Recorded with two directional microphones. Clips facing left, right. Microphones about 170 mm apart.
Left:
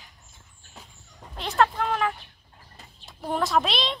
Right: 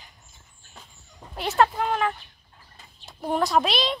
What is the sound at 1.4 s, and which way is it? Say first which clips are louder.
A woman's voice: right 2 dB; 5° right (ahead or behind).